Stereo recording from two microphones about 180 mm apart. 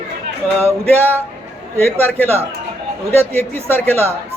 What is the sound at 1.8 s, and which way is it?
Speech, 10° left (ahead or behind).